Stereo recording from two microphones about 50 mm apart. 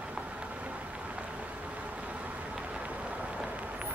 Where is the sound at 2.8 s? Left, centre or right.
Right.